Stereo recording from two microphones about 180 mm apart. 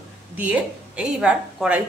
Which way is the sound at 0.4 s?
5° right (ahead or behind).